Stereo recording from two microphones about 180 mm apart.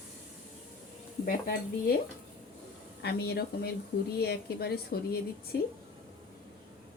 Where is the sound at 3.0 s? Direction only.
60° left (ahead or behind).